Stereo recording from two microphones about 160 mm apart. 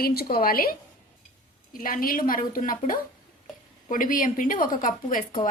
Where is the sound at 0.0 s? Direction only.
70° left (ahead or behind).